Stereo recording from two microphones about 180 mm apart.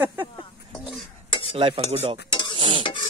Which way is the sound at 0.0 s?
10° right (ahead or behind).